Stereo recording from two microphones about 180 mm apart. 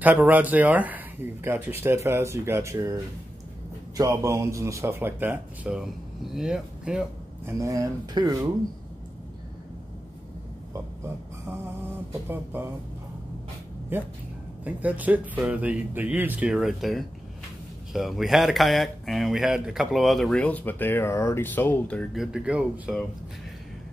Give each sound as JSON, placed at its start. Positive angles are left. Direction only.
{"t": 0.0, "sound": "speech", "side_deg": -10}
{"t": 7.5, "sound": "speech", "side_deg": -20}
{"t": 11.4, "sound": "a sound", "side_deg": -15}
{"t": 13.9, "sound": "speech", "side_deg": -10}